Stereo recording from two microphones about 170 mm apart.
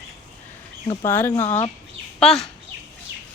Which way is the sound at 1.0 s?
15° left (ahead or behind).